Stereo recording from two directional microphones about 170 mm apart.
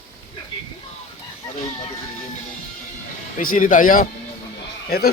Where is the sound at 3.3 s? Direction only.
55° left (ahead or behind).